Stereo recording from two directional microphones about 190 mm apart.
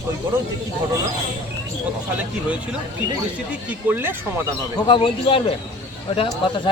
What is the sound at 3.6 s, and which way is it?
Speech, 10° right (ahead or behind).